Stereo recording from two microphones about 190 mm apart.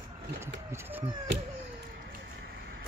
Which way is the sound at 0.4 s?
15° right (ahead or behind).